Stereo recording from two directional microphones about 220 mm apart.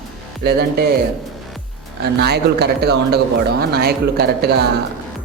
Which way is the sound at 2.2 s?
50° right (ahead or behind).